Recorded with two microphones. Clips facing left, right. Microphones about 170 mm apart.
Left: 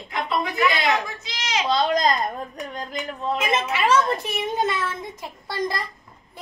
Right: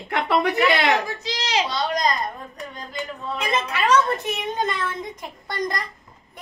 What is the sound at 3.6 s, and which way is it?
A woman's voice, 10° left (ahead or behind).